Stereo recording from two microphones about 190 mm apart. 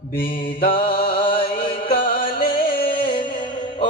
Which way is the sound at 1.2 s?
25° left (ahead or behind).